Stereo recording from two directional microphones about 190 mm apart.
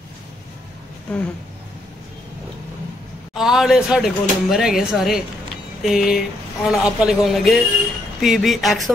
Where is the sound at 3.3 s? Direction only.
Centre (ahead or behind).